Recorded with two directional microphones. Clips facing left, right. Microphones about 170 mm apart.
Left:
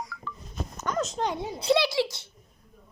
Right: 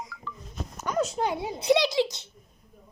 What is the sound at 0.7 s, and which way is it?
A child's voice, 10° right (ahead or behind).